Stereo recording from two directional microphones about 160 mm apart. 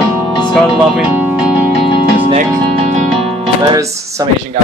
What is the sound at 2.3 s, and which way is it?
Music, 45° right (ahead or behind).